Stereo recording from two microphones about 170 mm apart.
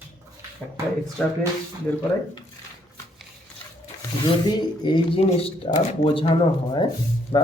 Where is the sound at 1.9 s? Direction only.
15° left (ahead or behind).